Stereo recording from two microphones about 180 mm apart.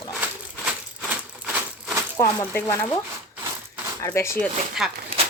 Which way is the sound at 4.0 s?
15° left (ahead or behind).